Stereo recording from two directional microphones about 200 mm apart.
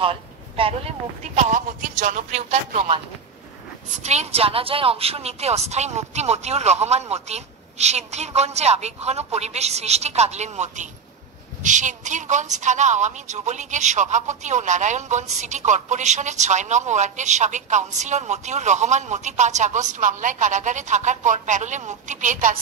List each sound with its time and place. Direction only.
0.0 s a woman's voice: 25° right (ahead or behind)